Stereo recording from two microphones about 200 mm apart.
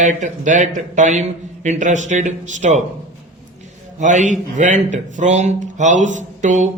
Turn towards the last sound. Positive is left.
turn(degrees=-35)  # may be behind; listen again after turning